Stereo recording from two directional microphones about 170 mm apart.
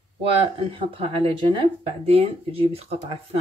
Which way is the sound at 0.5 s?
35° right (ahead or behind).